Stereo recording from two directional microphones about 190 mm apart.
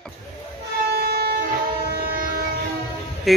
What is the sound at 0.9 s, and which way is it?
Train, 55° right (ahead or behind).